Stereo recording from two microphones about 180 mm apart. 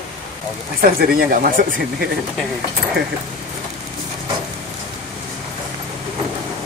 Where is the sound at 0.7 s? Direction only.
50° right (ahead or behind).